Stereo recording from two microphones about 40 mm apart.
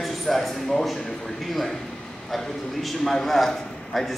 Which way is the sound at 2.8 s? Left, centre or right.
Centre.